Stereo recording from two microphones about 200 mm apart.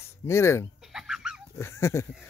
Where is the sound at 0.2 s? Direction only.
15° left (ahead or behind).